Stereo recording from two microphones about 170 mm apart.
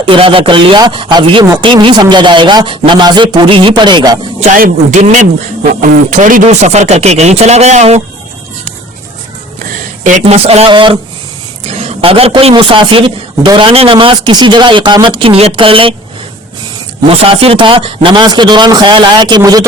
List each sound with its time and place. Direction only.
0.0 s speech: 30° right (ahead or behind)
4.5 s a man's voice: 50° right (ahead or behind)
10.0 s a man's voice: 40° right (ahead or behind)
17.1 s speech: 35° right (ahead or behind)